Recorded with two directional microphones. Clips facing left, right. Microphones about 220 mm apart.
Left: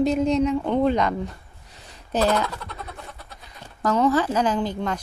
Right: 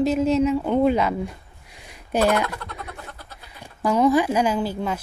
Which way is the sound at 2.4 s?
Centre (ahead or behind).